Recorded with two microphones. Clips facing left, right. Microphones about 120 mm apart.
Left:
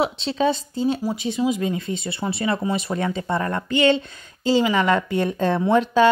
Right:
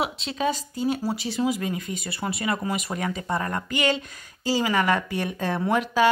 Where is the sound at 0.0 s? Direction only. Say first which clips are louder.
Left 5 dB; 30° left (ahead or behind).